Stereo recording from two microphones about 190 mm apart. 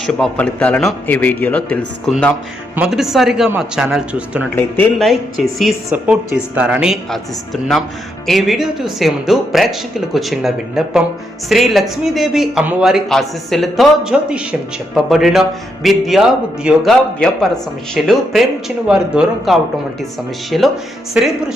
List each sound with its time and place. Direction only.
0.0 s speech: 5° left (ahead or behind)
2.7 s a woman's voice: 5° right (ahead or behind)
4.4 s a woman's voice: 5° left (ahead or behind)